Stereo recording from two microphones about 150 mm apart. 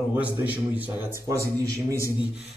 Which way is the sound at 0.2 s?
10° right (ahead or behind).